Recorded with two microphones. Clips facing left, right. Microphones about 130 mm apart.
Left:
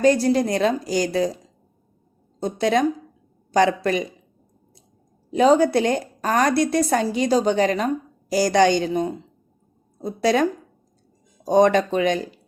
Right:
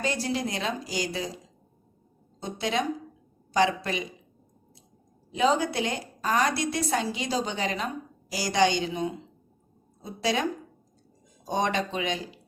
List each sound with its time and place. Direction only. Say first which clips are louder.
0.0 s a woman's voice: left 11 dB; 45° left (ahead or behind)
2.4 s a woman's voice: left 9 dB; 45° left (ahead or behind)
5.3 s a woman's voice: left 9 dB; 45° left (ahead or behind)